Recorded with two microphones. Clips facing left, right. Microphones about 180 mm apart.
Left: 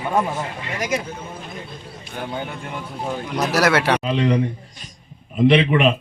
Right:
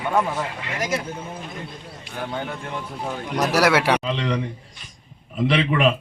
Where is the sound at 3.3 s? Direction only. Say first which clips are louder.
Even; 10° right (ahead or behind).